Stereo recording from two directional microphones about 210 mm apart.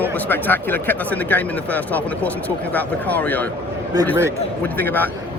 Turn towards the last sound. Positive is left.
turn(degrees=10)  # may be behind; listen again after turning